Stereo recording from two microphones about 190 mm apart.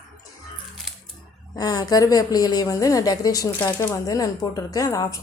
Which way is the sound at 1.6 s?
20° left (ahead or behind).